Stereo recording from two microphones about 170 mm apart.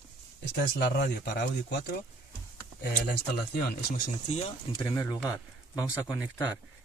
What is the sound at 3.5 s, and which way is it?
Speech, 65° left (ahead or behind).